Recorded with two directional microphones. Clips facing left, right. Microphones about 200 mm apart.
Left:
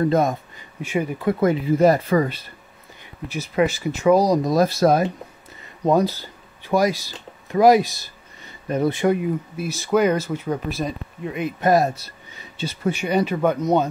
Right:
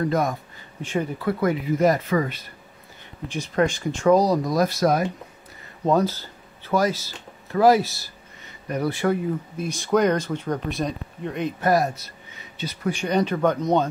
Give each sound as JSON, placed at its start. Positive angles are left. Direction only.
{"t": 0.0, "sound": "speech", "side_deg": 25}
{"t": 0.8, "sound": "speech", "side_deg": 10}
{"t": 3.3, "sound": "speech", "side_deg": 10}
{"t": 4.5, "sound": "speech", "side_deg": 30}
{"t": 5.9, "sound": "speech", "side_deg": 10}
{"t": 9.7, "sound": "speech", "side_deg": 5}
{"t": 11.6, "sound": "speech", "side_deg": 25}
{"t": 12.9, "sound": "speech", "side_deg": 10}